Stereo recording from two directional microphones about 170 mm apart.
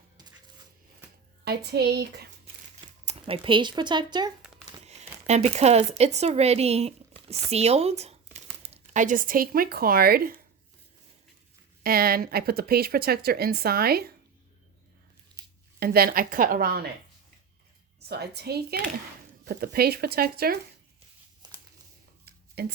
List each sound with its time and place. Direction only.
1.5 s speech: 70° right (ahead or behind)
2.4 s crumpling: 35° right (ahead or behind)
4.8 s speech: 40° right (ahead or behind); by 10.3 s 60° right (ahead or behind)
11.8 s speech: 60° right (ahead or behind)
15.8 s speech: 65° right (ahead or behind)
18.1 s speech: 75° right (ahead or behind)
22.6 s speech: 70° right (ahead or behind)